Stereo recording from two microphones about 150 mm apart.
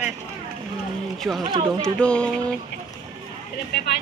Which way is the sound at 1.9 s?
5° left (ahead or behind).